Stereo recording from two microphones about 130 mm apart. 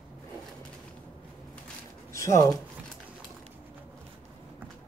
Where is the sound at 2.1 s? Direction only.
25° left (ahead or behind).